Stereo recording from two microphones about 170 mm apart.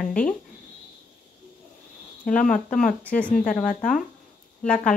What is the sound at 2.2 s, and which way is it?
Speech, 50° left (ahead or behind).